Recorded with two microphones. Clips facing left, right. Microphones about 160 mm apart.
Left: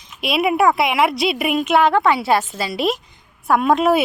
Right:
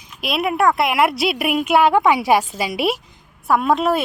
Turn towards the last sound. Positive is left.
turn(degrees=0)  # may be behind; listen again after turning